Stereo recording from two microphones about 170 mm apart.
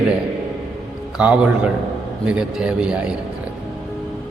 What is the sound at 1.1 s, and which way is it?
A man's voice, 5° right (ahead or behind).